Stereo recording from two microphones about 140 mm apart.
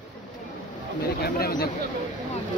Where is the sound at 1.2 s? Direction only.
90° left.